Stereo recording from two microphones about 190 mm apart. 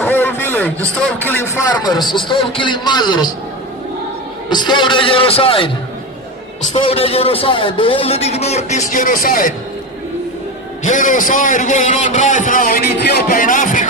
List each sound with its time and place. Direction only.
0.0 s a sound: 10° left (ahead or behind)
1.0 s a man's voice: 10° left (ahead or behind)
4.4 s a man's voice: 25° left (ahead or behind)
6.7 s a man's voice: 30° left (ahead or behind); by 9.5 s 45° left (ahead or behind)
10.8 s a man's voice: 45° left (ahead or behind)